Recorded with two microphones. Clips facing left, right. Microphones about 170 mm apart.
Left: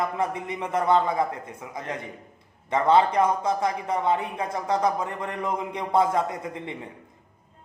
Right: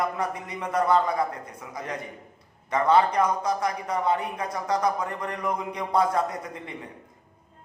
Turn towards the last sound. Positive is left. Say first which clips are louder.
# left 1 dB
turn(degrees=25)  # may be behind; listen again after turning